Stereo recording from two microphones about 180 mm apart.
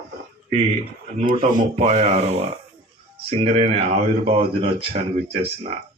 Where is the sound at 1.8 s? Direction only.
40° right (ahead or behind).